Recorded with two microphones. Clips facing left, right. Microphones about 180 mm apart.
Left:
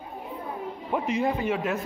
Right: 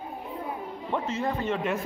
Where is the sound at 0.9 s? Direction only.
10° left (ahead or behind).